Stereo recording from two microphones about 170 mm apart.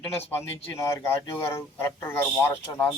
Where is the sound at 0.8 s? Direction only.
15° left (ahead or behind).